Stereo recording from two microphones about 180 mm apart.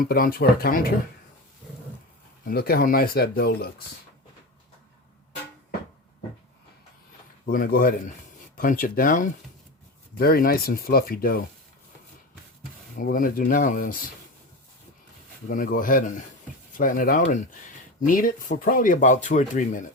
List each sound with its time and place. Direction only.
0.0 s speech: 55° left (ahead or behind)
2.4 s speech: 55° left (ahead or behind)
7.4 s speech: 55° left (ahead or behind)
13.0 s speech: 50° left (ahead or behind)
15.4 s speech: 50° left (ahead or behind)